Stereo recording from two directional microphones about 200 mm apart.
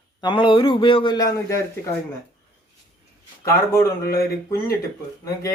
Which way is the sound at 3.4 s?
15° left (ahead or behind).